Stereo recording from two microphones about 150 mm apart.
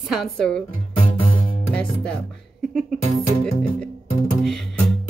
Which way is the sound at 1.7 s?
5° left (ahead or behind).